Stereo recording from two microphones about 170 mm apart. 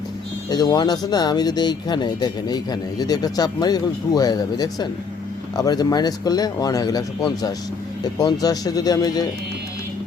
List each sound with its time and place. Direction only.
0.5 s speech: 25° left (ahead or behind)